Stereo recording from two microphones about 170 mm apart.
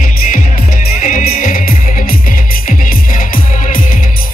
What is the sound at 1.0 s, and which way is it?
Music, 55° left (ahead or behind).